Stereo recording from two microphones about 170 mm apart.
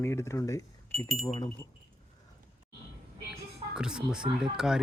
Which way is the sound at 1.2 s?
30° left (ahead or behind).